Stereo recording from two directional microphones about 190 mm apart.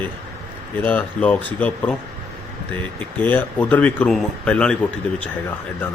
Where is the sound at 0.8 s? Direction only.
10° left (ahead or behind).